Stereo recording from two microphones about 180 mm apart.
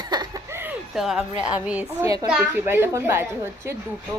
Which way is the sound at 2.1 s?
20° right (ahead or behind).